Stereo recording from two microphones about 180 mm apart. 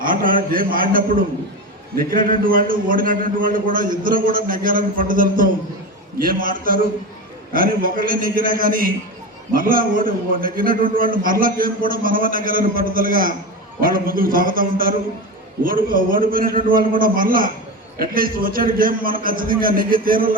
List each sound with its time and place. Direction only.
0.0 s a man's voice: 50° right (ahead or behind)